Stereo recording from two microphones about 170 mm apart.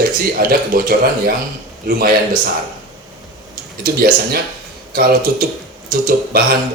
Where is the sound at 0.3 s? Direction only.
60° right (ahead or behind).